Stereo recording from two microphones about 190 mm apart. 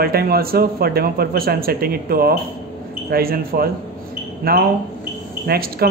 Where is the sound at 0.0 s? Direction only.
55° right (ahead or behind).